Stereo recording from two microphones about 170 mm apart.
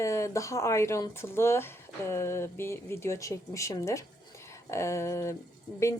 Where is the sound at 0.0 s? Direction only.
15° left (ahead or behind).